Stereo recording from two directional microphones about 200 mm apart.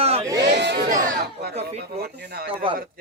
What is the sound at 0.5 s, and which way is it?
Speech, 60° right (ahead or behind).